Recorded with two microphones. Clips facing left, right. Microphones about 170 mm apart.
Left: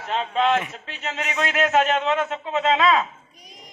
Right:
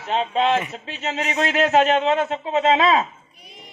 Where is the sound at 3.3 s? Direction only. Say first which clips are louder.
Right 1 dB; 40° left (ahead or behind).